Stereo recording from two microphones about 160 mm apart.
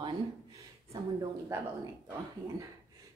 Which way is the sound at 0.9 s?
20° right (ahead or behind).